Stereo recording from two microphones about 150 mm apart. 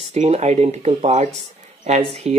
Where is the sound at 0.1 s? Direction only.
45° right (ahead or behind).